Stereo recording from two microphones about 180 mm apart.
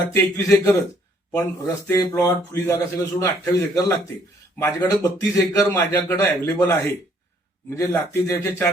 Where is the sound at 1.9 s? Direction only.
15° left (ahead or behind).